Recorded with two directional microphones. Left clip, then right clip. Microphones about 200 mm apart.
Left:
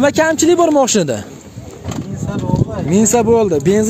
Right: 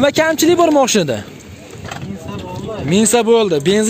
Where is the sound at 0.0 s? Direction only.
20° left (ahead or behind).